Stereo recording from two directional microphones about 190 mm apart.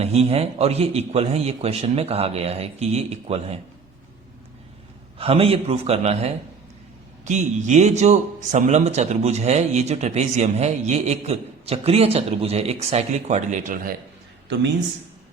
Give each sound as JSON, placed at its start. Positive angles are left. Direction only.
{"t": 0.0, "sound": "speech", "side_deg": -35}
{"t": 5.1, "sound": "speech", "side_deg": -30}